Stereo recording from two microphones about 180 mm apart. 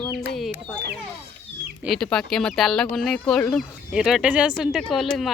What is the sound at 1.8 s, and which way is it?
Speech, centre (ahead or behind).